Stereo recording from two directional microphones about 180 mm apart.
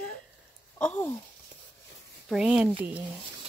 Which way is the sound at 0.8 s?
10° left (ahead or behind).